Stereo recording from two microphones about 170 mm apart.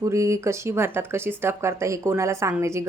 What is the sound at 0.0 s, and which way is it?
A woman's voice, 15° right (ahead or behind).